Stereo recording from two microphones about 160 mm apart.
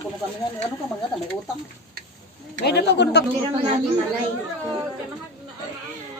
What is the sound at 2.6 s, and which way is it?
Speech, 90° left.